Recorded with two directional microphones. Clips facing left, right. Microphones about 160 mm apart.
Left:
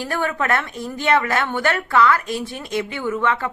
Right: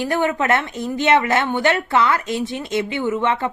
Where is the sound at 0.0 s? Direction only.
20° right (ahead or behind).